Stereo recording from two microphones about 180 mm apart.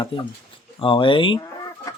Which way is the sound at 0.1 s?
30° left (ahead or behind).